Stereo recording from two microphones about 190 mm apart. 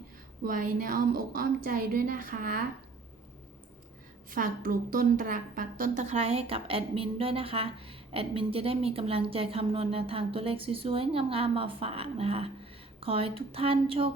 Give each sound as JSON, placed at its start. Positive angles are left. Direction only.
{"t": 0.4, "sound": "a woman's voice", "side_deg": -45}
{"t": 4.3, "sound": "a woman's voice", "side_deg": -45}